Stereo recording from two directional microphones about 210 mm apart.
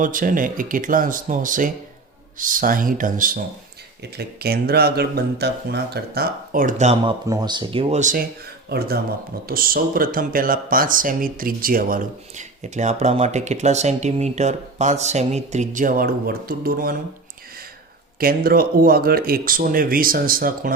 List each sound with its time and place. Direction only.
0.0 s speech: 40° right (ahead or behind)
18.2 s speech: 45° right (ahead or behind)